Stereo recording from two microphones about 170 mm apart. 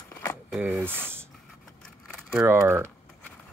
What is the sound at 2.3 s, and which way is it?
Speech, 10° right (ahead or behind).